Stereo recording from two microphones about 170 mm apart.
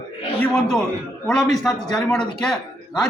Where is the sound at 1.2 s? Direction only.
5° left (ahead or behind).